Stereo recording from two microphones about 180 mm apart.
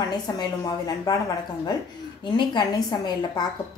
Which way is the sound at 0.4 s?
20° left (ahead or behind).